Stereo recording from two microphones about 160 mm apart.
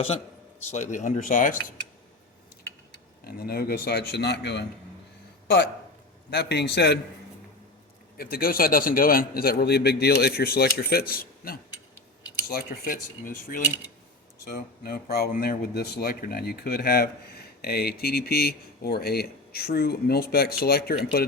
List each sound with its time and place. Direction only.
0.7 s speech: 50° left (ahead or behind)
3.2 s speech: 75° left (ahead or behind); by 4.6 s 90° left
6.3 s a man's voice: 90° left
8.2 s speech: 70° left (ahead or behind)